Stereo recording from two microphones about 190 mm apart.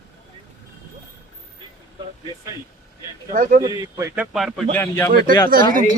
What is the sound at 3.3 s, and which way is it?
Speech, 45° right (ahead or behind).